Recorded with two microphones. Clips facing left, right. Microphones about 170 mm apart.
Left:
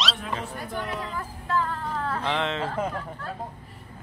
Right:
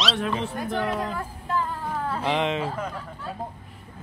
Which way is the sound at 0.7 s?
80° right.